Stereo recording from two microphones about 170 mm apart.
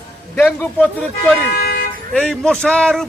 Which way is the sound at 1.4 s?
60° left (ahead or behind).